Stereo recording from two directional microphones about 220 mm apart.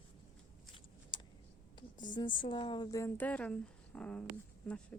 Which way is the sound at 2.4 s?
20° left (ahead or behind).